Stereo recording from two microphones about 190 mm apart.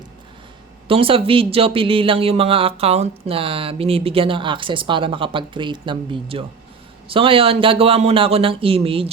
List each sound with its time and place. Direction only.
0.9 s speech: 30° right (ahead or behind)